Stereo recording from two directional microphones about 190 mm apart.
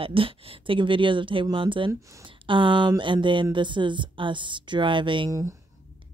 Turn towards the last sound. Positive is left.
turn(degrees=-15)  # may be behind; listen again after turning